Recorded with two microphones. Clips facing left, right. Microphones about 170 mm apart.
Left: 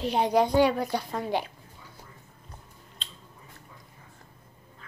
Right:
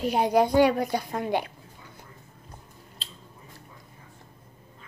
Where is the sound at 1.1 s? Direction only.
55° right (ahead or behind).